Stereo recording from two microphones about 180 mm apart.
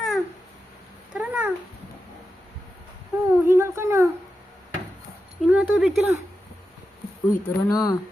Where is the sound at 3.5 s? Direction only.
15° right (ahead or behind).